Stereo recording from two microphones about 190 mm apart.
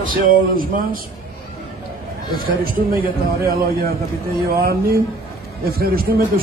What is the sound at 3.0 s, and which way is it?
Speech, 50° right (ahead or behind).